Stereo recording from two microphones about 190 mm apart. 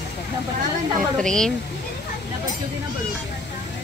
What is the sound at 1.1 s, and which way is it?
Speech, 5° left (ahead or behind).